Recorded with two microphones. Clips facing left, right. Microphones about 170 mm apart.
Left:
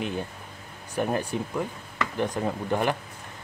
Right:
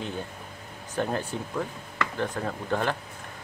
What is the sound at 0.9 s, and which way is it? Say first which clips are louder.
Speech: left 2 dB; 15° left (ahead or behind).